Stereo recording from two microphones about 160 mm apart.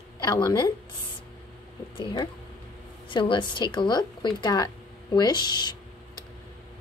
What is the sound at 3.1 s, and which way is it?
A woman's voice, 30° left (ahead or behind).